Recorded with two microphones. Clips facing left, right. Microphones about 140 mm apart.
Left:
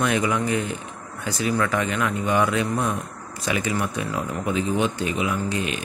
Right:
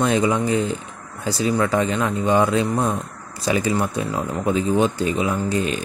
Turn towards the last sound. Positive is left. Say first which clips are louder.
# right 4 dB
turn(degrees=-35)  # may be behind; listen again after turning